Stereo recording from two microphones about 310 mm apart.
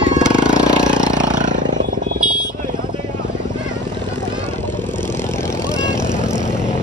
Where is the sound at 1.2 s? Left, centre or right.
Right.